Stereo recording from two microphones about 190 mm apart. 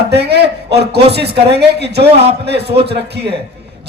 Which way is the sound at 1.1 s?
60° right (ahead or behind).